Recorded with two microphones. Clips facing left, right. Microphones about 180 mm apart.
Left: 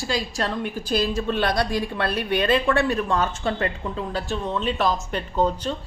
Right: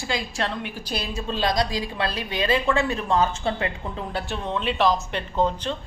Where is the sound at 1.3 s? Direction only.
60° left (ahead or behind).